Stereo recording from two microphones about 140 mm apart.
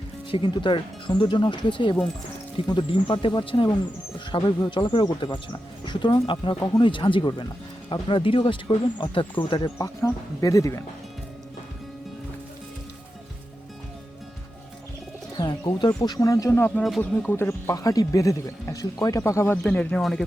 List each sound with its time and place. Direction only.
0.3 s speech: 35° left (ahead or behind)
9.7 s speech: 20° left (ahead or behind)
15.4 s bird: 30° left (ahead or behind)
16.0 s speech: 30° left (ahead or behind); by 20.2 s centre (ahead or behind)